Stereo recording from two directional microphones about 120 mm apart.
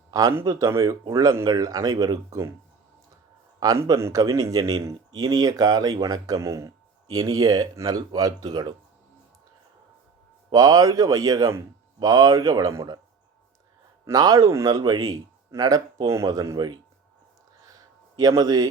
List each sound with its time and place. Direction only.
0.1 s speech: 25° right (ahead or behind)
3.6 s speech: 30° right (ahead or behind)
10.5 s speech: 30° right (ahead or behind)
14.1 s speech: 30° right (ahead or behind)
17.7 s a sound: 30° right (ahead or behind)